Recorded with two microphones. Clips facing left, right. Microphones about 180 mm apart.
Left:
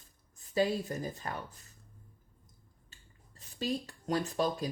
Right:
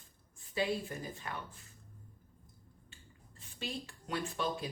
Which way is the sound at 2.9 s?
40° left (ahead or behind).